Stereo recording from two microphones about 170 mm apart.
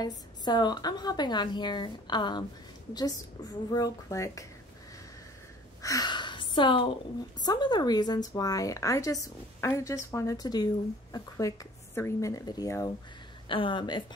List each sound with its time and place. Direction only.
0.0 s speech: 25° left (ahead or behind)
3.7 s speech: 20° left (ahead or behind)
5.8 s a sound: 20° left (ahead or behind)
7.3 s speech: 25° left (ahead or behind)